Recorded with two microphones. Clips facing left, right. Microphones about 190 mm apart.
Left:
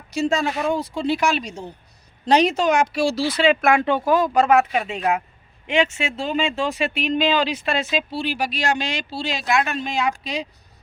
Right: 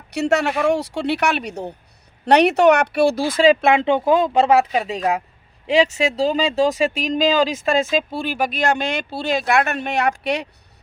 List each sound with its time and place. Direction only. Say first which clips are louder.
0.1 s speech: right 3 dB; 70° right (ahead or behind); by 3.5 s 50° right (ahead or behind)
3.5 s speech: right 2 dB; 25° right (ahead or behind); by 10.5 s 65° right (ahead or behind)